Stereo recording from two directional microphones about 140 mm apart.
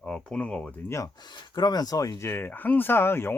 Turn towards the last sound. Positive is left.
turn(degrees=15)  # may be behind; listen again after turning